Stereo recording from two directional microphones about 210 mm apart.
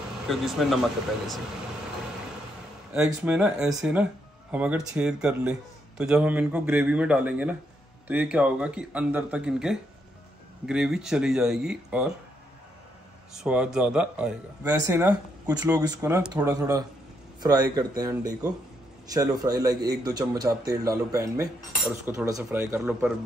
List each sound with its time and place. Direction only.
0.3 s speech: centre (ahead or behind)
3.0 s speech: 5° right (ahead or behind)
13.3 s speech: 5° right (ahead or behind)
14.6 s a man's voice: 20° right (ahead or behind)